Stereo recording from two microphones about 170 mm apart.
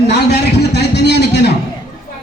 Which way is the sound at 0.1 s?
75° left (ahead or behind).